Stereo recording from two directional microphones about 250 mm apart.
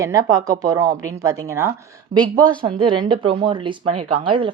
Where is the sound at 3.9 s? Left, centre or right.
Right.